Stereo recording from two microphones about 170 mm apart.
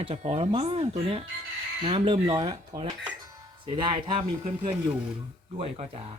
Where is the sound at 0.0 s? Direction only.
35° right (ahead or behind).